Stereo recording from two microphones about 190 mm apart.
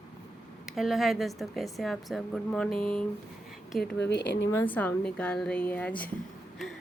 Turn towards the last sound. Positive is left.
turn(degrees=10)  # may be behind; listen again after turning